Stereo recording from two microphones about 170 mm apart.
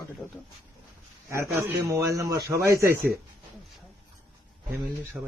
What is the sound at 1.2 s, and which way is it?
A man's voice, 15° right (ahead or behind).